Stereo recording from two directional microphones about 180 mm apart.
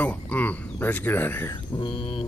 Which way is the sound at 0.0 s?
10° left (ahead or behind).